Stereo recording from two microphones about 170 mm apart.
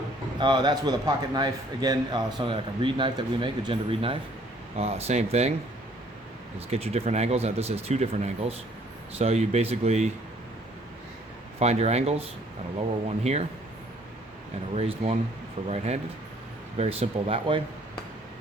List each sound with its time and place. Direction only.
0.3 s a man's voice: 25° right (ahead or behind)
6.7 s speech: 40° right (ahead or behind)
11.6 s speech: 40° right (ahead or behind)
14.8 s speech: 35° right (ahead or behind)